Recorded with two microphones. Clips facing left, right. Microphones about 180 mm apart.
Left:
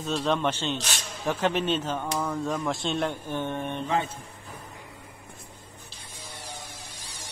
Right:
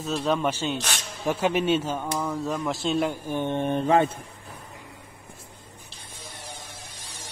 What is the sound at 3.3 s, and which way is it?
Mantra, 20° right (ahead or behind).